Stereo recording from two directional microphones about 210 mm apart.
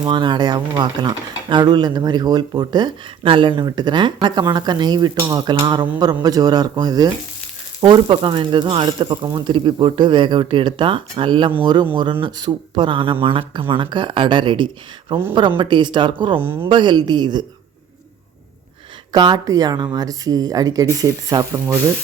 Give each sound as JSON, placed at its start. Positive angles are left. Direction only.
{"t": 0.0, "sound": "speech", "side_deg": -20}
{"t": 16.4, "sound": "sizzle", "side_deg": -10}
{"t": 16.6, "sound": "speech", "side_deg": -20}
{"t": 19.1, "sound": "speech", "side_deg": -20}
{"t": 21.0, "sound": "sizzle", "side_deg": -15}